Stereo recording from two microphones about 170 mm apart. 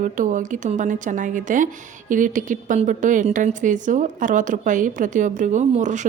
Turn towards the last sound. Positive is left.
turn(degrees=-45)  # may be behind; listen again after turning